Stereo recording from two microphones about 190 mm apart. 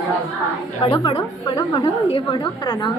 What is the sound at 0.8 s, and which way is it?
A woman's voice, 30° left (ahead or behind).